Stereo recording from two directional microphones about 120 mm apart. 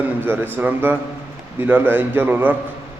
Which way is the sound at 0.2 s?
15° right (ahead or behind).